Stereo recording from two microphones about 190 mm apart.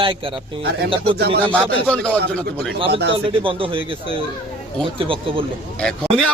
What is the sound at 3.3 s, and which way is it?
A man's voice, 30° right (ahead or behind).